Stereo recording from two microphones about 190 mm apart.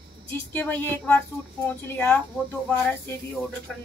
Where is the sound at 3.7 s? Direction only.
5° left (ahead or behind).